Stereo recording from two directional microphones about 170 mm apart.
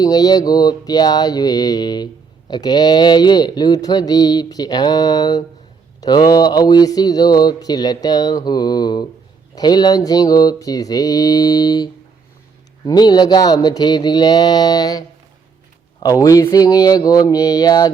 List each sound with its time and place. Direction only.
0.0 s speech: 25° left (ahead or behind)
16.0 s speech: 20° left (ahead or behind)